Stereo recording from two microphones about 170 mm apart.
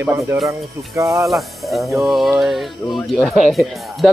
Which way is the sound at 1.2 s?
Centre (ahead or behind).